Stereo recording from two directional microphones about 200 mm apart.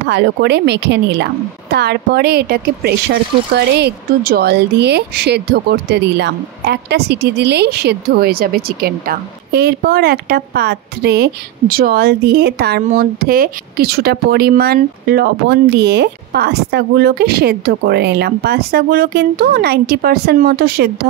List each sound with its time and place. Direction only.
0.1 s speech: 60° right (ahead or behind)
12.8 s speech: 45° right (ahead or behind)